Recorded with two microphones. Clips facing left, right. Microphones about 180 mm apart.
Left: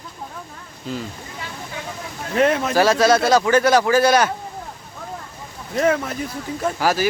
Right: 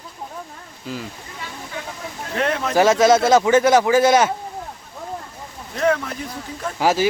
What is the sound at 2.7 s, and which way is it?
Speech, 20° right (ahead or behind).